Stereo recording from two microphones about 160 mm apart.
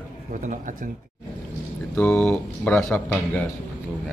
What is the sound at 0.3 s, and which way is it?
Speech, 55° right (ahead or behind).